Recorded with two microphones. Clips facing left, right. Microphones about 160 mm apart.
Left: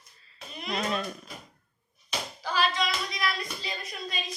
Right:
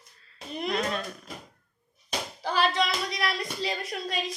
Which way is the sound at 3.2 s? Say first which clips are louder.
Right 3 dB; 75° right (ahead or behind).